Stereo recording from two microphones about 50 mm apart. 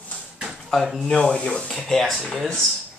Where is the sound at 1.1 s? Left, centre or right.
Centre.